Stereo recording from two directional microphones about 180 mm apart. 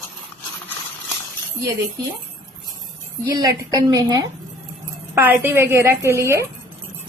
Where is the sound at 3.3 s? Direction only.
20° right (ahead or behind).